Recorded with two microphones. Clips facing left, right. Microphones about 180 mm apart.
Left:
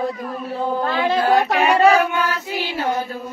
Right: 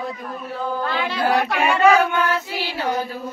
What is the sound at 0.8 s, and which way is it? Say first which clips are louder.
Child singing: left 4 dB; 45° left (ahead or behind).